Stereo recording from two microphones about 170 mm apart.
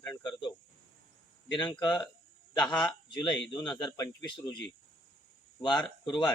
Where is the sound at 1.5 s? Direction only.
25° left (ahead or behind).